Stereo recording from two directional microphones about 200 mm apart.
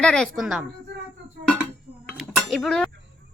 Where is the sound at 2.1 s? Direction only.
Centre (ahead or behind).